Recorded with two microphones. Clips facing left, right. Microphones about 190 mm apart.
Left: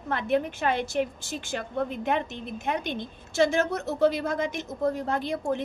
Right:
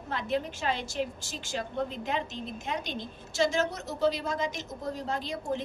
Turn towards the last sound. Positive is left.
turn(degrees=60)  # may be behind; listen again after turning